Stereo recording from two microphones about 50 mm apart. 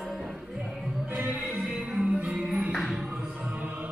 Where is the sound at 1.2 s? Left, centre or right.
Right.